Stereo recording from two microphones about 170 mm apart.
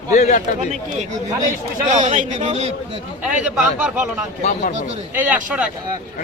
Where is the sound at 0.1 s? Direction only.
45° left (ahead or behind).